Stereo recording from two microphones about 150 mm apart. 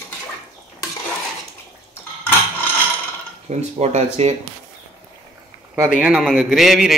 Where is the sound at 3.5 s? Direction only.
50° right (ahead or behind).